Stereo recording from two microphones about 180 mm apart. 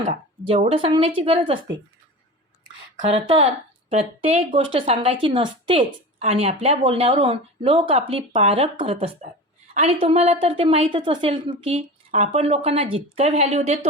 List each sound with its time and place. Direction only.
0.0 s speech: 40° right (ahead or behind)
3.1 s a woman's voice: 35° right (ahead or behind)